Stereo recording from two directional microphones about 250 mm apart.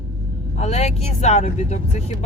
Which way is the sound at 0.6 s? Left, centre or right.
Left.